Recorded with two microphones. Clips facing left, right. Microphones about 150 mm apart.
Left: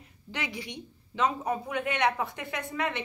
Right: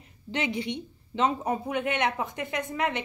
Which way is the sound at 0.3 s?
25° right (ahead or behind).